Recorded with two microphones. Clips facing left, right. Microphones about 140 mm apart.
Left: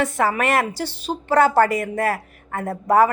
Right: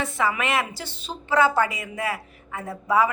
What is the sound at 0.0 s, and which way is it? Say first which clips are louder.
A woman's voice: left 5 dB; 45° left (ahead or behind).